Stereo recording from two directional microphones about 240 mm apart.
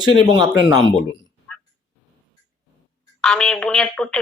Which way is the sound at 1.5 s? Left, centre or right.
Centre.